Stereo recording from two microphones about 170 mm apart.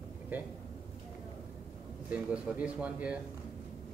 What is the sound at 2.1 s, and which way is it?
Speech, 10° right (ahead or behind).